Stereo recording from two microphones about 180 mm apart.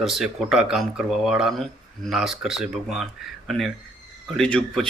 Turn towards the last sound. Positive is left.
turn(degrees=5)  # may be behind; listen again after turning